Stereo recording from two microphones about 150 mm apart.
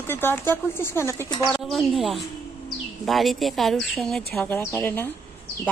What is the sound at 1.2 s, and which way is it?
Speech, 30° left (ahead or behind).